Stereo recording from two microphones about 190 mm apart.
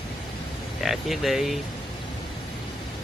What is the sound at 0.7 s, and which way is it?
Speech, centre (ahead or behind).